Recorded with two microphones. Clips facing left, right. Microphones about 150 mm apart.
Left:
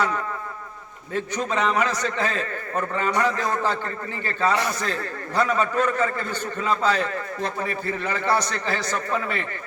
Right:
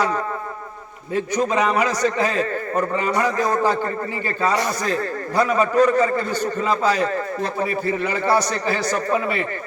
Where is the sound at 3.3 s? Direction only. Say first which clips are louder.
Right 5 dB; 40° right (ahead or behind).